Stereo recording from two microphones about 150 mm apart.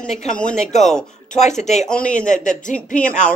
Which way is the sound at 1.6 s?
50° left (ahead or behind).